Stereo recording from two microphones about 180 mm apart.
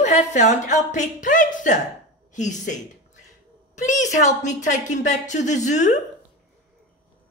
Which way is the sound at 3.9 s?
40° left (ahead or behind).